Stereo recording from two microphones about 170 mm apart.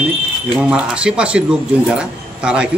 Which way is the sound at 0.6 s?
5° right (ahead or behind).